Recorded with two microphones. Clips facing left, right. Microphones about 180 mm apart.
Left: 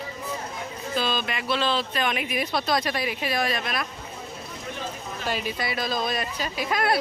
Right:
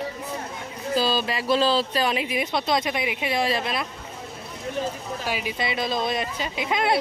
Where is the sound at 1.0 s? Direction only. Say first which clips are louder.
Right 3 dB; 35° right (ahead or behind).